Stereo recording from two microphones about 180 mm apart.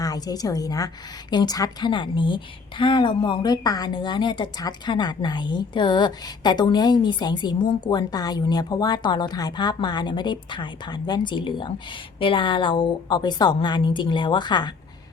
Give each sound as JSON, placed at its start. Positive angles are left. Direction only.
{"t": 0.0, "sound": "a woman's voice", "side_deg": 20}